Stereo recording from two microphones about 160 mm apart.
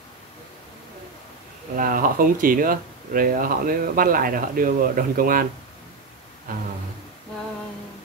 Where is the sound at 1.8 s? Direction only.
60° right (ahead or behind).